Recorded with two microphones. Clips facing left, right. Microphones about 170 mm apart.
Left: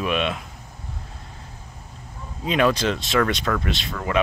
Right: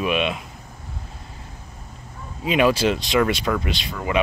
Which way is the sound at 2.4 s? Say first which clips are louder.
Right 2 dB; 10° right (ahead or behind).